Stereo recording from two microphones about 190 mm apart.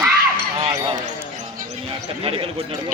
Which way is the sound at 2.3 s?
30° right (ahead or behind).